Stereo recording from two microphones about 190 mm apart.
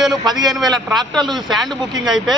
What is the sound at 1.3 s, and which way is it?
Speech, centre (ahead or behind).